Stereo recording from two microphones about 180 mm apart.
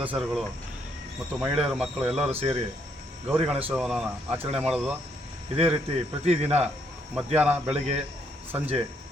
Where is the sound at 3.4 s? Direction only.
10° right (ahead or behind).